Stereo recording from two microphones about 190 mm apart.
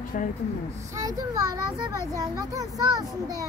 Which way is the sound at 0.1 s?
45° left (ahead or behind).